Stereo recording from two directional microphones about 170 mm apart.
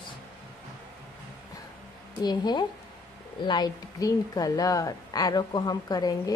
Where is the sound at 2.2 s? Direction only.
25° left (ahead or behind).